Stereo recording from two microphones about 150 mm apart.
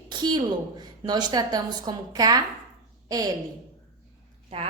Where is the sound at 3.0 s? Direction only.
25° right (ahead or behind).